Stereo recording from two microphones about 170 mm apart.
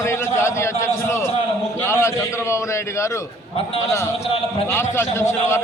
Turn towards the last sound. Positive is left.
turn(degrees=15)  # may be behind; listen again after turning